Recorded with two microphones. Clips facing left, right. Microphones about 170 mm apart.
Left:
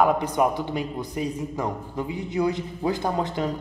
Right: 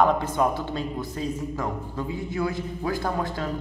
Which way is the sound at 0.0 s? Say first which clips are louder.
Left 1 dB; 15° left (ahead or behind).